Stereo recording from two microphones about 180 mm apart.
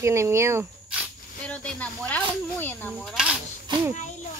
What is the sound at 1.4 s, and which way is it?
Snake, 5° left (ahead or behind).